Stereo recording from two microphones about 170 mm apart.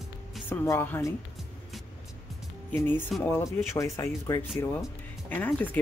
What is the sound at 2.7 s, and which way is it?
Speech, 15° left (ahead or behind).